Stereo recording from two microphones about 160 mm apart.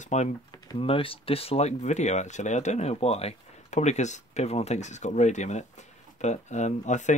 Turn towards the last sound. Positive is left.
turn(degrees=50)  # may be behind; listen again after turning